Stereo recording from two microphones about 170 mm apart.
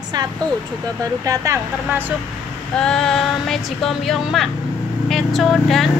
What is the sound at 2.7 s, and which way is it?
A woman's voice, 5° left (ahead or behind).